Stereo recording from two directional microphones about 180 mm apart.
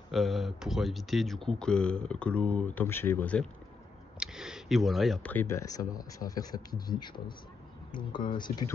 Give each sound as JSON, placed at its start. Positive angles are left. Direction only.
{"t": 0.1, "sound": "speech", "side_deg": 0}
{"t": 4.2, "sound": "speech", "side_deg": -5}